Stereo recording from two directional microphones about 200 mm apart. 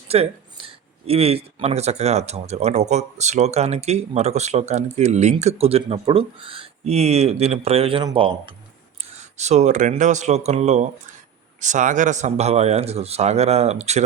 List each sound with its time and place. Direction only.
0.1 s speech: 30° right (ahead or behind)